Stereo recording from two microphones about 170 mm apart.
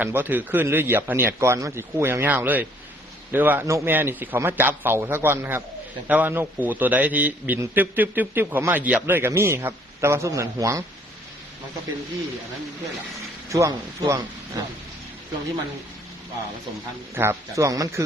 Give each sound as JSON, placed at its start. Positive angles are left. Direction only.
{"t": 0.0, "sound": "a man's voice", "side_deg": -10}
{"t": 13.5, "sound": "speech", "side_deg": -20}
{"t": 17.2, "sound": "a man's voice", "side_deg": -15}